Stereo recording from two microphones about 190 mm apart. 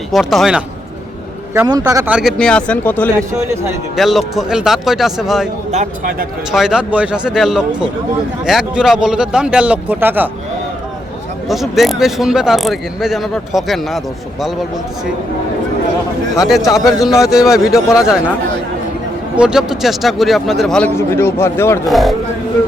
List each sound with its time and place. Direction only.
0.1 s speech: centre (ahead or behind)
1.8 s a man's voice: 10° right (ahead or behind)
2.1 s speech: centre (ahead or behind)
3.2 s a man's voice: 15° right (ahead or behind)
3.9 s speech: centre (ahead or behind)
5.7 s speech: 45° right (ahead or behind)
6.5 s speech: 5° right (ahead or behind)
11.4 s speech: centre (ahead or behind)
16.6 s speech: 20° left (ahead or behind)
17.2 s speech: centre (ahead or behind)
17.8 s speech: 15° left (ahead or behind)
19.4 s speech: 5° right (ahead or behind); by 21.8 s 15° left (ahead or behind)
21.8 s speech: centre (ahead or behind)